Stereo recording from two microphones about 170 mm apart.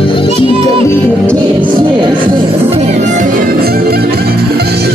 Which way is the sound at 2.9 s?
45° right (ahead or behind).